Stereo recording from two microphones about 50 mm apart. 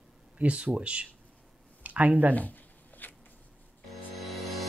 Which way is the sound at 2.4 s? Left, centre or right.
Left.